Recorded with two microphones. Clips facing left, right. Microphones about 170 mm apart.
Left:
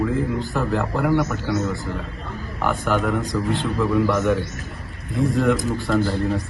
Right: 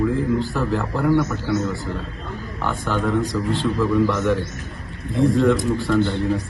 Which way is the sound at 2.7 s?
15° left (ahead or behind).